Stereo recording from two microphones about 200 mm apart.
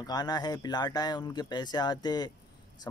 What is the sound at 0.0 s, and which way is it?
Speech, 20° left (ahead or behind).